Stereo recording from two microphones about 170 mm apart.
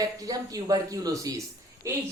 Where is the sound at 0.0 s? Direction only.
20° right (ahead or behind).